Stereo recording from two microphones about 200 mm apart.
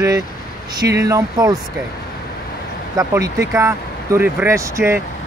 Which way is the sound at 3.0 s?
15° right (ahead or behind).